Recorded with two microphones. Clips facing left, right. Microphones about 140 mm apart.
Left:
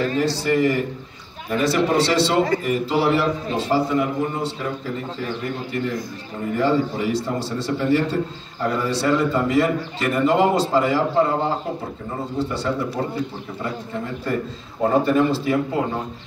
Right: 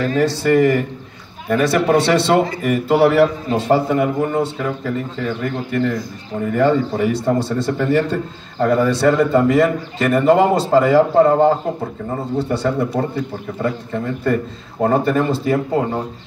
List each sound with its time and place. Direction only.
0.0 s a man's voice: 50° right (ahead or behind)